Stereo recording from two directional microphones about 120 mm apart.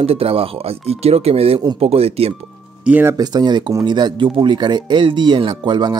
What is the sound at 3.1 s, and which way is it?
Speech, 35° right (ahead or behind).